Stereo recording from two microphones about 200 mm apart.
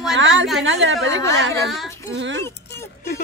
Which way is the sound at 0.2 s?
65° right (ahead or behind).